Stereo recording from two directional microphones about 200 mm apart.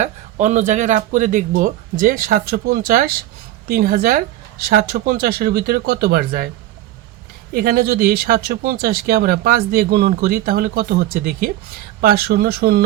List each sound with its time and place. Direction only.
0.0 s speech: 35° right (ahead or behind)
7.5 s speech: 50° right (ahead or behind)